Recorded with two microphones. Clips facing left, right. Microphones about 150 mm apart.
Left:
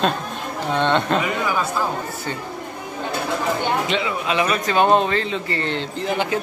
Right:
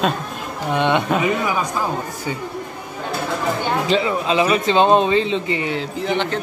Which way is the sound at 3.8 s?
35° right (ahead or behind).